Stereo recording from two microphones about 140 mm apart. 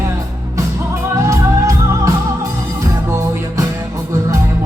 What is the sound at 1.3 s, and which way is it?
Music, 20° right (ahead or behind).